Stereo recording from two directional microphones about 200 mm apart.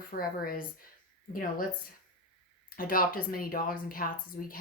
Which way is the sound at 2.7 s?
45° left (ahead or behind).